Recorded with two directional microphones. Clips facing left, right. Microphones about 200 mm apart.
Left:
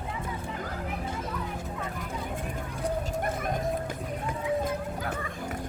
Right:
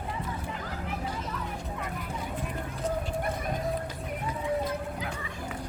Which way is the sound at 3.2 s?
50° left (ahead or behind).